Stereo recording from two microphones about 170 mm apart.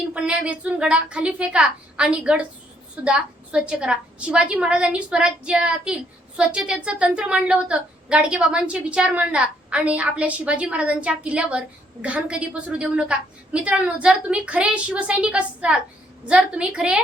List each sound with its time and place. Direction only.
0.1 s a woman's voice: 5° right (ahead or behind)